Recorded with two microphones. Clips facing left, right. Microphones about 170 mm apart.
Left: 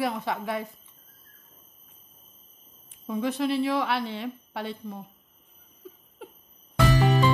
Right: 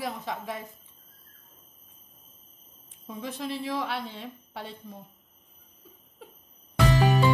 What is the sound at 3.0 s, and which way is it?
A woman's voice, 70° left (ahead or behind).